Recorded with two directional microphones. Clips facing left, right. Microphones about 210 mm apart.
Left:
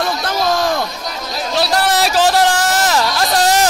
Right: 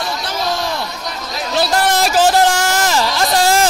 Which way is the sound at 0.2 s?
50° left (ahead or behind).